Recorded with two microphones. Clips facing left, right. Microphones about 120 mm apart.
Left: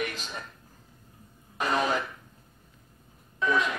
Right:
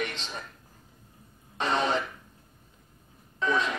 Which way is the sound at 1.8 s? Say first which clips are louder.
Even; 30° right (ahead or behind).